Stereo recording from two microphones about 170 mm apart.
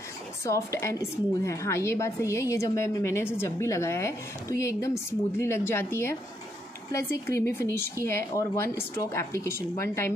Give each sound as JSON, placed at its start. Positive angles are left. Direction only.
{"t": 0.5, "sound": "a woman's voice", "side_deg": 15}